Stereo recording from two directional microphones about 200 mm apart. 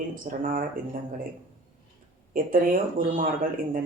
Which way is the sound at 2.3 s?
45° right (ahead or behind).